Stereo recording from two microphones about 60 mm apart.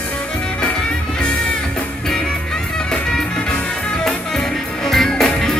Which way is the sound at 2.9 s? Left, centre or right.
Centre.